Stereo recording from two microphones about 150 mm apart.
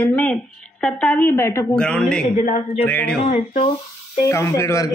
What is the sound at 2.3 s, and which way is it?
Speech, 50° left (ahead or behind).